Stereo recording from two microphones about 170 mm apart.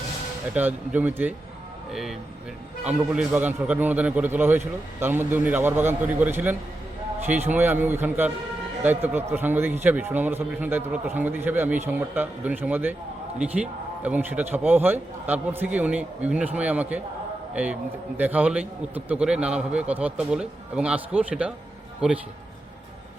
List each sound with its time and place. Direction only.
0.5 s a man's voice: 10° right (ahead or behind)